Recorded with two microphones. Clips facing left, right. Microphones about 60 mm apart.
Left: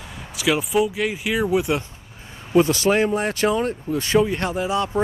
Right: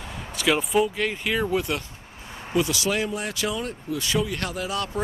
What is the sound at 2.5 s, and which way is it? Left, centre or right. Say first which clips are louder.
Speech: left 7 dB; left.